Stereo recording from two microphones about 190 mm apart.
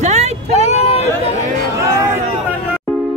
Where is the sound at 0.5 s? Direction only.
35° left (ahead or behind).